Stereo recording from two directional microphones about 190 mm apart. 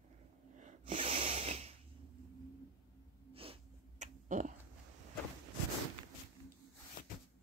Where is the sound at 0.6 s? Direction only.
40° right (ahead or behind).